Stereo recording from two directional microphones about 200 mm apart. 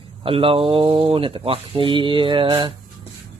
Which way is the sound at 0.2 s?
25° right (ahead or behind).